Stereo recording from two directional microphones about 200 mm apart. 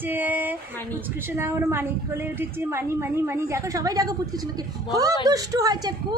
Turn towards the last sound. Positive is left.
turn(degrees=-20)  # may be behind; listen again after turning